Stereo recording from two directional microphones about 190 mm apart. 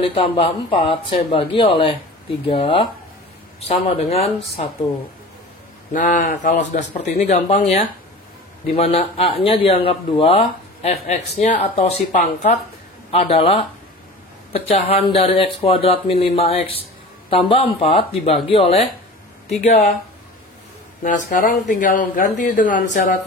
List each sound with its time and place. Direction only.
0.0 s a man's voice: 30° left (ahead or behind)
5.9 s a man's voice: 40° left (ahead or behind)
21.0 s speech: 45° left (ahead or behind)